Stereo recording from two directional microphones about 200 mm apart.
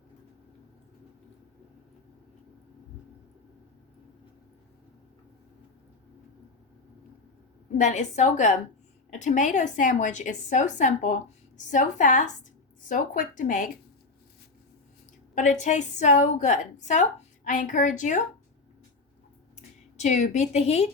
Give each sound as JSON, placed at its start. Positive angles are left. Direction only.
{"t": 7.8, "sound": "a woman's voice", "side_deg": 35}
{"t": 15.4, "sound": "a woman's voice", "side_deg": 40}
{"t": 20.0, "sound": "a woman's voice", "side_deg": 35}